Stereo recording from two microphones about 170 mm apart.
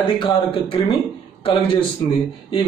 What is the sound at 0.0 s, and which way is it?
A man's voice, 30° left (ahead or behind).